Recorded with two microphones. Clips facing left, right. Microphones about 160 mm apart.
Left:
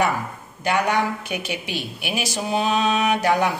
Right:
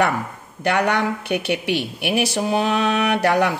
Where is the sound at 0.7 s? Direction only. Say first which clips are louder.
Right 2 dB; 65° right (ahead or behind).